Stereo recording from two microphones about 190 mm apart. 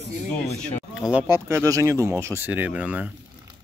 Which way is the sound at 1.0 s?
5° right (ahead or behind).